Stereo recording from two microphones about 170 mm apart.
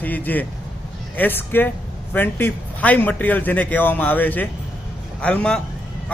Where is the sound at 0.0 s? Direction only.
10° left (ahead or behind).